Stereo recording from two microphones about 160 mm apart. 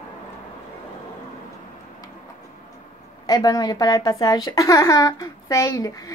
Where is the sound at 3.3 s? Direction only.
25° left (ahead or behind).